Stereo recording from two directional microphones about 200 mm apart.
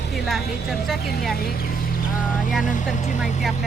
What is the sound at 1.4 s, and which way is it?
Speech, 50° left (ahead or behind).